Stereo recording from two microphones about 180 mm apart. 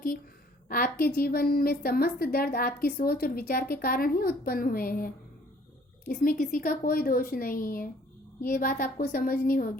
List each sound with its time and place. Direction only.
0.7 s a woman's voice: 55° left (ahead or behind)